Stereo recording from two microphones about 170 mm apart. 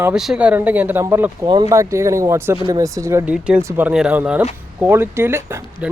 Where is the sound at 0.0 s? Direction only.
5° right (ahead or behind).